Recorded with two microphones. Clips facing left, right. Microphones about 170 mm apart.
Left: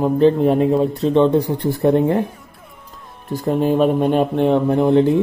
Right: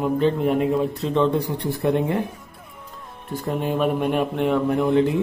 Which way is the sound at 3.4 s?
35° left (ahead or behind).